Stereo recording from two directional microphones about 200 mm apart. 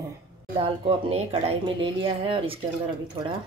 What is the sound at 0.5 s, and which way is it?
Speech, 25° right (ahead or behind).